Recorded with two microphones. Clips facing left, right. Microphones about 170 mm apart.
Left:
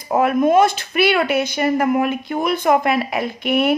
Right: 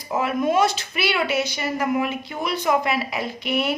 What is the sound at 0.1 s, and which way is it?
A woman's voice, 55° left (ahead or behind).